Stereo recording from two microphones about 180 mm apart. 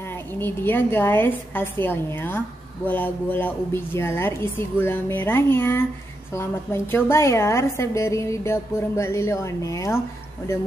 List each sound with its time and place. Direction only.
0.1 s a woman's voice: 10° left (ahead or behind)